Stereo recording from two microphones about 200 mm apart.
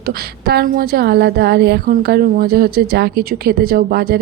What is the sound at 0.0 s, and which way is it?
Speech, 50° right (ahead or behind).